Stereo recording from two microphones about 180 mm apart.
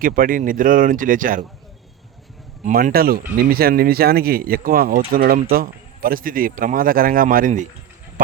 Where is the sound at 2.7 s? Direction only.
50° right (ahead or behind).